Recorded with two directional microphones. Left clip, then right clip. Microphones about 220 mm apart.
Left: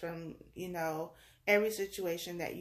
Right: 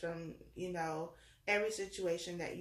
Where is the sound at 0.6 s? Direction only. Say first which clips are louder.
Left 3 dB; 45° left (ahead or behind).